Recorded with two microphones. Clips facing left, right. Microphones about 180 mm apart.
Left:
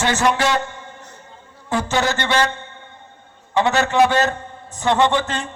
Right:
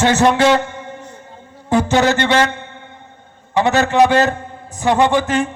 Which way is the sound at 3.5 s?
15° right (ahead or behind).